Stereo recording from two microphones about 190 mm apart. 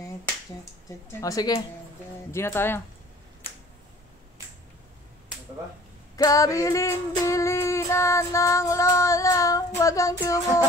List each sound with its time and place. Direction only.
1.2 s speech: 20° left (ahead or behind)
3.4 s a sound: 30° left (ahead or behind)
6.1 s female singing: 20° left (ahead or behind)